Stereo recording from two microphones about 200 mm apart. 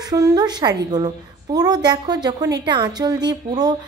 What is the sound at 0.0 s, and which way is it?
A woman's voice, 20° right (ahead or behind).